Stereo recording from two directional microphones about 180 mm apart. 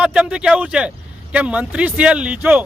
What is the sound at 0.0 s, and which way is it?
A man's voice, 5° right (ahead or behind).